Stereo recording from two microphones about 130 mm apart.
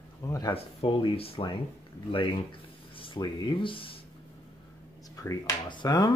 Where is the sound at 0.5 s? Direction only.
45° left (ahead or behind).